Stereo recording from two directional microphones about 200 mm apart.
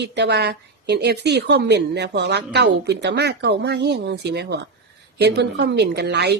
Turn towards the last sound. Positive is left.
turn(degrees=-55)  # may be behind; listen again after turning